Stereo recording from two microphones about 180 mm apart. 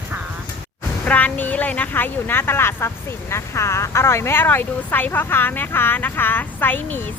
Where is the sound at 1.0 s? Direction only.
10° left (ahead or behind).